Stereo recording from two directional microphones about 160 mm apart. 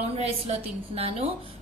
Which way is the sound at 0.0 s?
40° right (ahead or behind).